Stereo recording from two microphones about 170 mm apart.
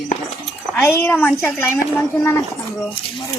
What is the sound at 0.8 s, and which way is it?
A woman's voice, 10° left (ahead or behind).